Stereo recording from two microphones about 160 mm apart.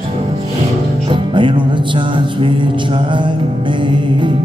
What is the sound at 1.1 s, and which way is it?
Music, 30° right (ahead or behind).